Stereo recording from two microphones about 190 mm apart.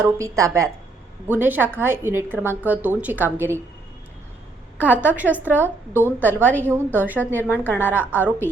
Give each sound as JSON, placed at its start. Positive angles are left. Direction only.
{"t": 0.0, "sound": "a woman's voice", "side_deg": -15}
{"t": 4.8, "sound": "a woman's voice", "side_deg": -10}